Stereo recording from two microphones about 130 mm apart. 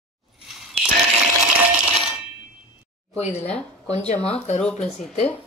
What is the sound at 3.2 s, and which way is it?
Speech, 55° left (ahead or behind).